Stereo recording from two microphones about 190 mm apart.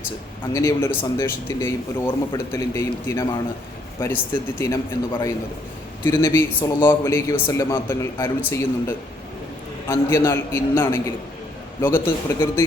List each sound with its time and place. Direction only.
0.5 s speech: 10° left (ahead or behind)